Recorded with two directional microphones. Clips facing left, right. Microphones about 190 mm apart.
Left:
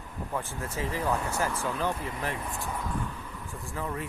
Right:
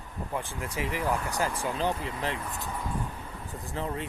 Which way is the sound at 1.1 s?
15° right (ahead or behind).